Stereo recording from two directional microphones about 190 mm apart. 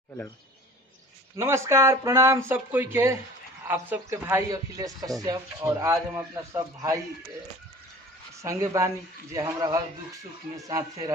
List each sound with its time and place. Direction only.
1.3 s a man's voice: 15° right (ahead or behind)
8.4 s a man's voice: 15° right (ahead or behind)